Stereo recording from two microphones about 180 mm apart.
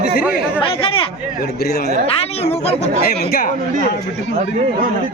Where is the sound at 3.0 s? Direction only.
60° left (ahead or behind).